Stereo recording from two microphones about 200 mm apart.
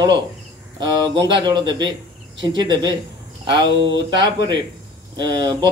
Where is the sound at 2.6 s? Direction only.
20° right (ahead or behind).